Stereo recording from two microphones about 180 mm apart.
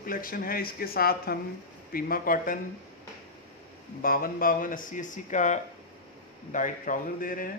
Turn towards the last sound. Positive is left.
turn(degrees=50)  # may be behind; listen again after turning